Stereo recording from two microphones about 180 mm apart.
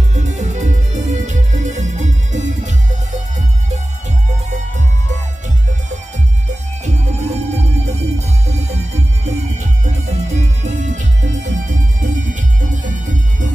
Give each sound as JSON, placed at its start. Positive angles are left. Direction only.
{"t": 0.1, "sound": "music", "side_deg": -40}
{"t": 6.5, "sound": "music", "side_deg": -40}